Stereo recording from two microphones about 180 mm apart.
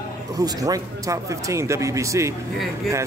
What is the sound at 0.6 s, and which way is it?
Speech, 20° right (ahead or behind).